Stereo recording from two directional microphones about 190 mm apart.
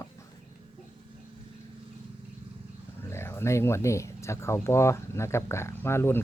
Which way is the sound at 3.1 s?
15° left (ahead or behind).